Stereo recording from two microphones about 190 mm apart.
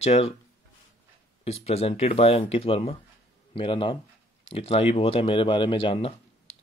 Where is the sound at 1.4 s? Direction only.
30° left (ahead or behind).